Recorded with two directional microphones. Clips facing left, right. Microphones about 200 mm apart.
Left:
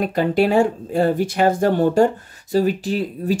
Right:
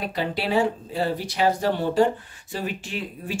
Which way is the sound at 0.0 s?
50° left (ahead or behind).